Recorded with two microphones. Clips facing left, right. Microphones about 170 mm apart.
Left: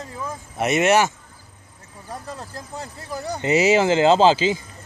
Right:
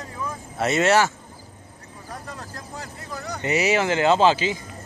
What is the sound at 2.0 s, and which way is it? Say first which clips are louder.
Speech: left 3 dB; 30° left (ahead or behind).